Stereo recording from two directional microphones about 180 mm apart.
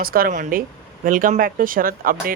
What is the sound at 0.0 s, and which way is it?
Speech, 55° right (ahead or behind).